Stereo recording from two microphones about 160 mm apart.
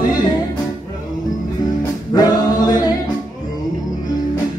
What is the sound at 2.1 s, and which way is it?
Singing, 25° left (ahead or behind).